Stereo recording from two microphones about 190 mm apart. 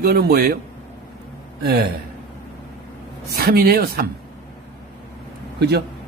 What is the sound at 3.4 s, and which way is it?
Speech, 55° right (ahead or behind).